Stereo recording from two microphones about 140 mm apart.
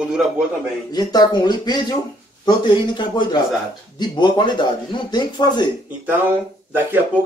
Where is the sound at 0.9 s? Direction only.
30° left (ahead or behind).